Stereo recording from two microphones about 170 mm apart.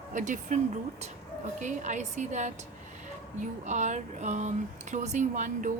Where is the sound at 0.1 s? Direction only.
50° right (ahead or behind).